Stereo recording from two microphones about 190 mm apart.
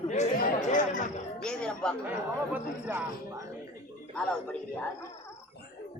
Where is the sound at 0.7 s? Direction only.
40° left (ahead or behind).